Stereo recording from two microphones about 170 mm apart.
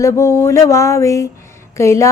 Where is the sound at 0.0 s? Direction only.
15° left (ahead or behind).